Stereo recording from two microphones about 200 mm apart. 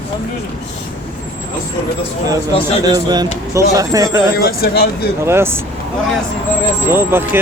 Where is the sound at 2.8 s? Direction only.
20° right (ahead or behind).